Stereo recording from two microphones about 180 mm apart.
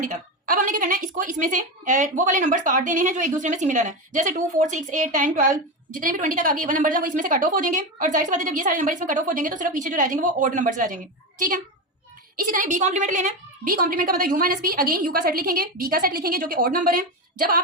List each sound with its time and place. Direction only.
0.0 s a woman's voice: 50° right (ahead or behind)